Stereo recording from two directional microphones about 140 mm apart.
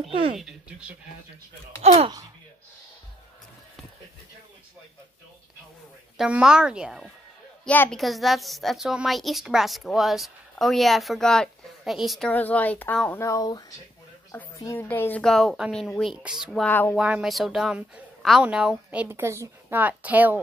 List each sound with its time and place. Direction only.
0.4 s speech: 5° right (ahead or behind)
1.8 s speech: 50° right (ahead or behind)
6.1 s a woman's voice: 5° right (ahead or behind)
7.6 s speech: 10° left (ahead or behind)
8.0 s a woman's voice: centre (ahead or behind)
12.3 s speech: 10° left (ahead or behind)
13.2 s speech: 25° left (ahead or behind)
15.2 s a woman's voice: centre (ahead or behind)
16.6 s speech: 15° left (ahead or behind)
16.9 s a woman's voice: 5° right (ahead or behind)